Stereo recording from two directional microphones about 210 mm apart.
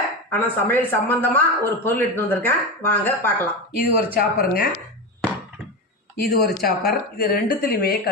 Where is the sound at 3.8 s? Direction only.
45° left (ahead or behind).